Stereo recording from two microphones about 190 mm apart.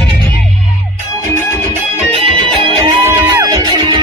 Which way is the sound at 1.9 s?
30° right (ahead or behind).